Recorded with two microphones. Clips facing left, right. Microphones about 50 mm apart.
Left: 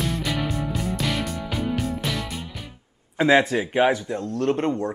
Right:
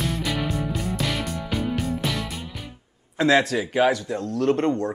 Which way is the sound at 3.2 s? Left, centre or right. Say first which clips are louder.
Left 1 dB; centre.